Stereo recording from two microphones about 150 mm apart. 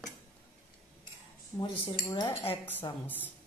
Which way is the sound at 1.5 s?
30° left (ahead or behind).